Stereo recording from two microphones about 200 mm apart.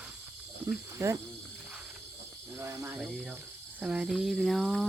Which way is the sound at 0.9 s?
15° right (ahead or behind).